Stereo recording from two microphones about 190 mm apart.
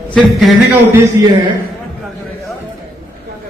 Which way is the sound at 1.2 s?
15° right (ahead or behind).